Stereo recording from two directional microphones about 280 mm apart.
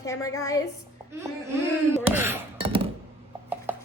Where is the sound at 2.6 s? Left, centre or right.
Centre.